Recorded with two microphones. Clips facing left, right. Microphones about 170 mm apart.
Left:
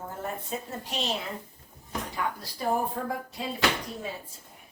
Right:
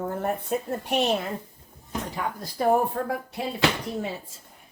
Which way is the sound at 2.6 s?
55° right (ahead or behind).